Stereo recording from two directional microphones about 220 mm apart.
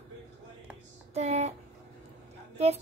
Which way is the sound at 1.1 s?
30° right (ahead or behind).